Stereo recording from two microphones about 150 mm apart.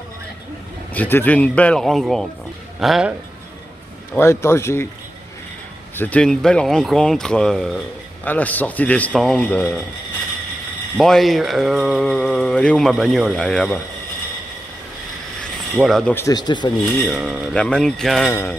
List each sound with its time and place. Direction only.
0.9 s speech: 10° left (ahead or behind); by 3.2 s 5° right (ahead or behind)
4.2 s speech: 15° left (ahead or behind)
5.9 s speech: 10° left (ahead or behind)
11.0 s speech: centre (ahead or behind)
15.7 s speech: centre (ahead or behind)
16.2 s speech: 25° left (ahead or behind)
17.1 s speech: centre (ahead or behind)
18.3 s speech: 15° left (ahead or behind)